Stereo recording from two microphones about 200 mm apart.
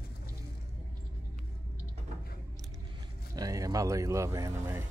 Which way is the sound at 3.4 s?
15° right (ahead or behind).